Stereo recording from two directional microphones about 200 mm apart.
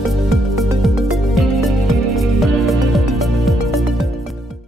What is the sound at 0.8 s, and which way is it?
Music, centre (ahead or behind).